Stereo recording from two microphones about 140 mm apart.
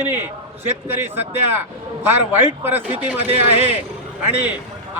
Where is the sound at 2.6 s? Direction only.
15° right (ahead or behind).